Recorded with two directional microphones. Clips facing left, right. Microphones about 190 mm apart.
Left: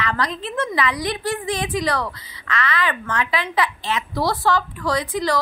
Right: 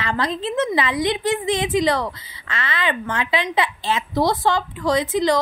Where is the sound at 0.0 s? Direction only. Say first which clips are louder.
Right 2 dB; 25° right (ahead or behind).